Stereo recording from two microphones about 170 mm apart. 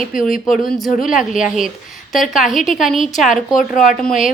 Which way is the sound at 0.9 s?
50° left (ahead or behind).